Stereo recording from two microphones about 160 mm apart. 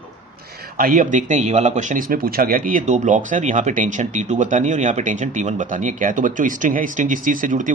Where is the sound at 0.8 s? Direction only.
60° right (ahead or behind).